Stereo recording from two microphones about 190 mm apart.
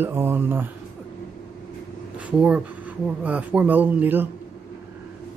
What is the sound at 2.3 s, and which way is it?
Speech, 5° right (ahead or behind).